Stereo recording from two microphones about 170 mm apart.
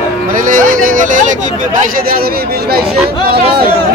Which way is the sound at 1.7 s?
50° right (ahead or behind).